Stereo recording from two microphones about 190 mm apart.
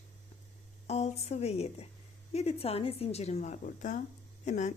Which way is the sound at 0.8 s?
35° left (ahead or behind).